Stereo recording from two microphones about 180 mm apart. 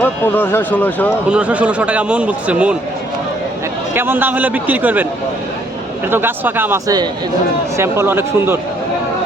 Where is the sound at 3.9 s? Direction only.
10° right (ahead or behind).